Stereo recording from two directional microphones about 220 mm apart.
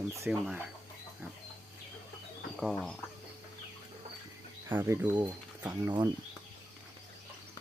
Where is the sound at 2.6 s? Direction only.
Centre (ahead or behind).